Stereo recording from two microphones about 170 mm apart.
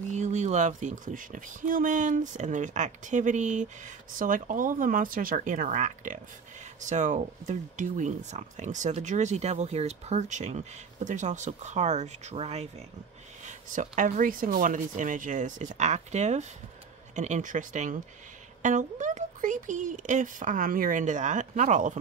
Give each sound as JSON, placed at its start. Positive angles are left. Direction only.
{"t": 0.1, "sound": "speech", "side_deg": -45}